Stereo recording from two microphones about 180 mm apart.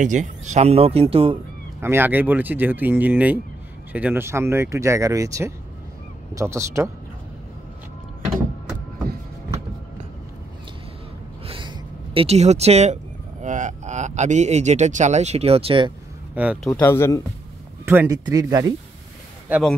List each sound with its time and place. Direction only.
0.0 s speech: 45° right (ahead or behind)
1.8 s speech: 10° right (ahead or behind)
11.4 s speech: 30° right (ahead or behind)
16.3 s speech: 5° right (ahead or behind)
16.7 s speech: 15° left (ahead or behind)
17.8 s speech: 15° right (ahead or behind)